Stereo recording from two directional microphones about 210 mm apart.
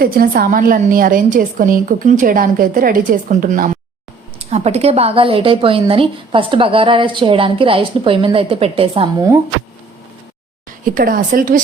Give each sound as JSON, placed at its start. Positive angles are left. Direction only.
{"t": 0.0, "sound": "a woman's voice", "side_deg": -45}
{"t": 4.4, "sound": "a woman's voice", "side_deg": -30}
{"t": 10.7, "sound": "a woman's voice", "side_deg": -40}